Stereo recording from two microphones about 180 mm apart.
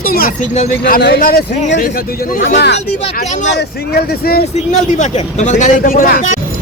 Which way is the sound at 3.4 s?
65° left (ahead or behind).